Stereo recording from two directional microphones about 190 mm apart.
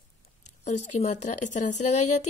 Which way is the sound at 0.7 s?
35° left (ahead or behind).